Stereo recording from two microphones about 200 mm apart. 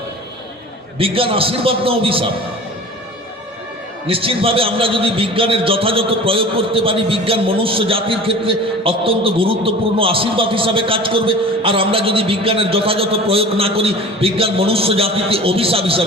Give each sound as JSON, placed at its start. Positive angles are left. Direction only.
{"t": 0.9, "sound": "a man's voice", "side_deg": -25}
{"t": 4.0, "sound": "a man's voice", "side_deg": -25}